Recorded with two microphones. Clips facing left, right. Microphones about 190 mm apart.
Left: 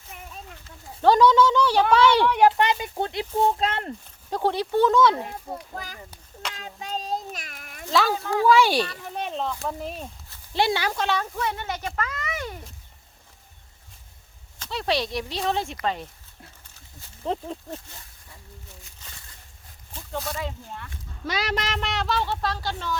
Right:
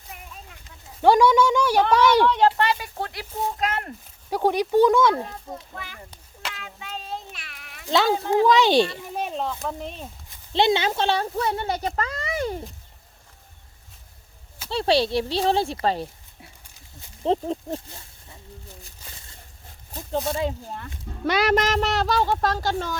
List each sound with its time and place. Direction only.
1.0 s speech: 10° right (ahead or behind)
2.2 s speech: 15° left (ahead or behind)
4.3 s speech: 10° right (ahead or behind)
5.1 s speech: 15° left (ahead or behind)
5.7 s speech: 40° left (ahead or behind)
7.9 s speech: 25° right (ahead or behind)
9.1 s speech: 5° right (ahead or behind)
10.2 s speech: 20° right (ahead or behind)
14.7 s speech: 30° right (ahead or behind)
17.2 s speech: 30° right (ahead or behind)
19.0 s a sound: 10° right (ahead or behind)
20.0 s speech: 20° right (ahead or behind)
21.2 s speech: 55° right (ahead or behind)